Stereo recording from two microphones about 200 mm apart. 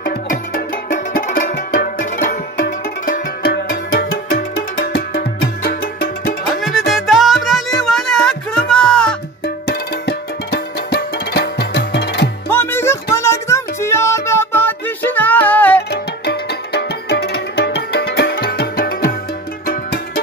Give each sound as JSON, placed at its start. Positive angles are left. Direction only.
{"t": 0.9, "sound": "music", "side_deg": 45}
{"t": 6.9, "sound": "music", "side_deg": 0}
{"t": 9.7, "sound": "music", "side_deg": 55}
{"t": 12.4, "sound": "music", "side_deg": 10}
{"t": 15.9, "sound": "music", "side_deg": 55}